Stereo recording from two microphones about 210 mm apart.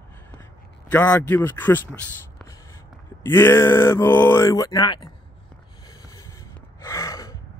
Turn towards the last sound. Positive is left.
turn(degrees=15)  # may be behind; listen again after turning